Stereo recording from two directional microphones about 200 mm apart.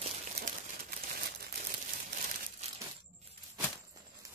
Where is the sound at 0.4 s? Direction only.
45° right (ahead or behind).